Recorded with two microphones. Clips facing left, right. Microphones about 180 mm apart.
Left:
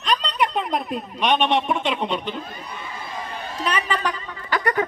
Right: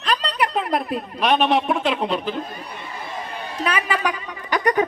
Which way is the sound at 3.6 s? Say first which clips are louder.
Right 1 dB; 10° right (ahead or behind).